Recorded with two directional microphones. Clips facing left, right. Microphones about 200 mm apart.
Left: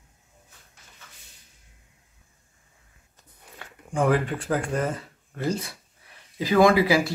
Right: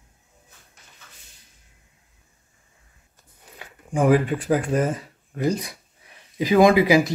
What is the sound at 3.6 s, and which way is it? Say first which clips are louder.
Speech: right 3 dB; 15° right (ahead or behind).